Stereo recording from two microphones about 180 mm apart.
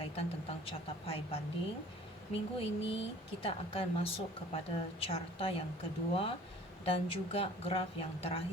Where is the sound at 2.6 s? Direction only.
30° left (ahead or behind).